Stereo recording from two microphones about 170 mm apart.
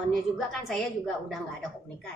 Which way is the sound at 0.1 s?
Centre (ahead or behind).